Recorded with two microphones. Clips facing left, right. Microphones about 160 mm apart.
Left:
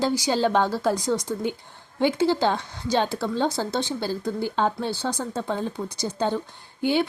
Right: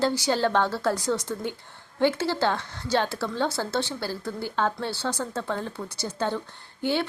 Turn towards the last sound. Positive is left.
turn(degrees=15)  # may be behind; listen again after turning